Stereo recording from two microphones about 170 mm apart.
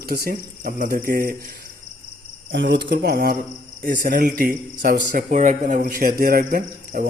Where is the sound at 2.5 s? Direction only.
90° right; by 5.2 s 65° right (ahead or behind).